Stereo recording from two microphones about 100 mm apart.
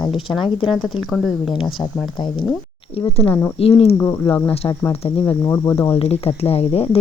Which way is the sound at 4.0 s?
20° left (ahead or behind).